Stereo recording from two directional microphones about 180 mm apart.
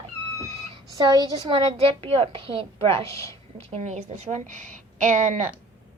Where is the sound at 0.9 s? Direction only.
20° right (ahead or behind).